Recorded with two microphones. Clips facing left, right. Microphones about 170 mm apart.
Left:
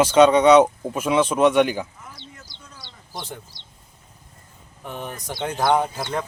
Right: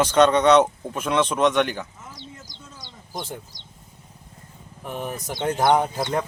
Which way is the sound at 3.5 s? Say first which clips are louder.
Right 2 dB; 45° right (ahead or behind).